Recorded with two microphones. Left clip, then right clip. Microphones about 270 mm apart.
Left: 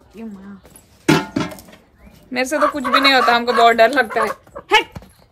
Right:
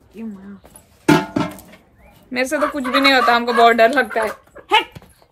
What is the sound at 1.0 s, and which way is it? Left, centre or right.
Music, centre.